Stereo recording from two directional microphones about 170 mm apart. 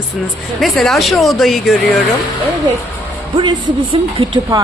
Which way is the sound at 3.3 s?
25° right (ahead or behind).